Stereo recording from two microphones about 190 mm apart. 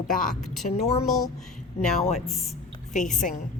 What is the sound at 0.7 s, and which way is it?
Speech, 30° left (ahead or behind).